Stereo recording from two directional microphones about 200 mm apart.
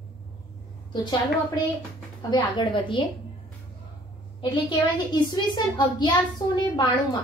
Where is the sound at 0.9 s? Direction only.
20° left (ahead or behind).